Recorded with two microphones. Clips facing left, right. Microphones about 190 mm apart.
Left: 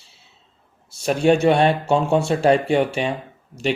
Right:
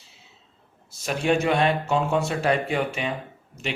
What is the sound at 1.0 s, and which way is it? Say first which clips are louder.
Speech: left 6 dB; 30° left (ahead or behind).